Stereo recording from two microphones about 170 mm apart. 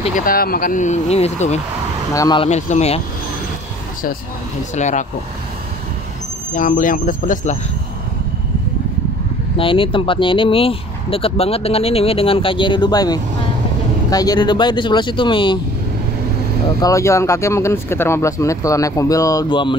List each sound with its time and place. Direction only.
0.0 s speech: 50° left (ahead or behind)
2.1 s speech: 25° left (ahead or behind)
2.4 s speech: 40° left (ahead or behind)
4.7 s speech: 45° left (ahead or behind)
6.5 s speech: 50° left (ahead or behind)
9.6 s speech: 30° left (ahead or behind)
16.8 s speech: 20° left (ahead or behind)